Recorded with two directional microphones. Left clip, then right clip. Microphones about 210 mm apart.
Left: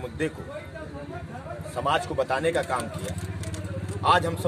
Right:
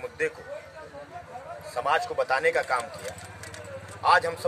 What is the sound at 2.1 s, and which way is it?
Speech, 15° right (ahead or behind).